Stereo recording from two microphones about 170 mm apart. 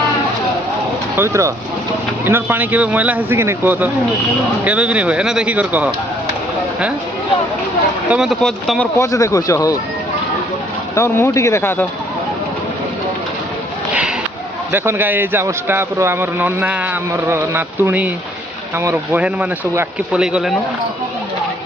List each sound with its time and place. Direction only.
1.1 s a man's voice: 15° right (ahead or behind)
8.1 s speech: centre (ahead or behind)
9.0 s speech: 20° left (ahead or behind)
10.9 s speech: 15° left (ahead or behind)
14.7 s a man's voice: 10° right (ahead or behind)